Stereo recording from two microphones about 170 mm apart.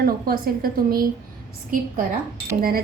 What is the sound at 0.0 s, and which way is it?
A woman's voice, 60° right (ahead or behind).